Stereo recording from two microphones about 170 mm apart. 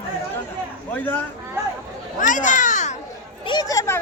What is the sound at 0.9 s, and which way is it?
Speech, 10° left (ahead or behind).